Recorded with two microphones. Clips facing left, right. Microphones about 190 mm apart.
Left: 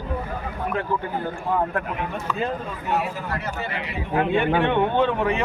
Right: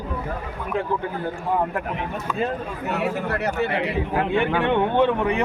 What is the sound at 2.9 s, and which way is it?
Speech, 65° right (ahead or behind).